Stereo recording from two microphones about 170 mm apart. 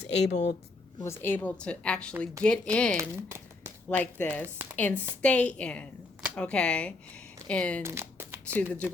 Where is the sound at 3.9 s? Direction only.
10° left (ahead or behind).